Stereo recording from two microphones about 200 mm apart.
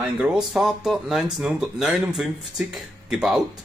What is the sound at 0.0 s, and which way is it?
Speech, 5° right (ahead or behind).